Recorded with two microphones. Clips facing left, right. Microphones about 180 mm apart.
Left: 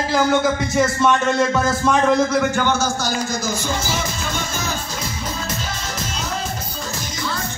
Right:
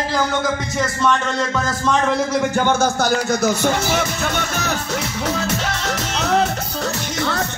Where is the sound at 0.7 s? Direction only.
10° left (ahead or behind).